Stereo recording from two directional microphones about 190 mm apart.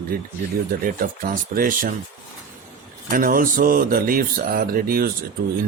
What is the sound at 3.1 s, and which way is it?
Speech, 50° right (ahead or behind).